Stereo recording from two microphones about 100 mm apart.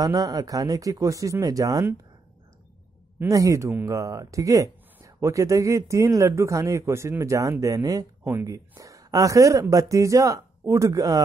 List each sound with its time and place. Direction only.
0.0 s speech: 35° right (ahead or behind)
3.3 s speech: 35° right (ahead or behind)